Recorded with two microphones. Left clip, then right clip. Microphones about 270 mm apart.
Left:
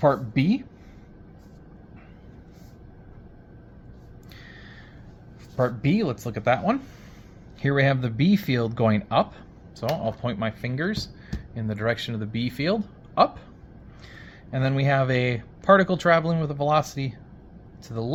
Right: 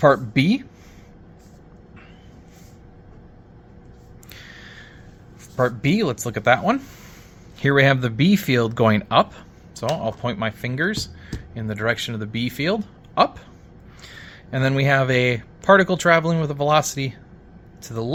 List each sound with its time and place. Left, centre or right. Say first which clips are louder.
0.0 s speech: right 5 dB; right
4.3 s a sound: right 5 dB; right
5.5 s speech: right 4 dB; centre